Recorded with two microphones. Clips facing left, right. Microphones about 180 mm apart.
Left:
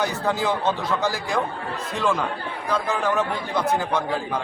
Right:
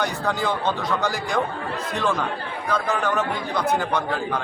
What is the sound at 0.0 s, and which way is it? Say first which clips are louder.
A man's voice: left 1 dB; 5° left (ahead or behind).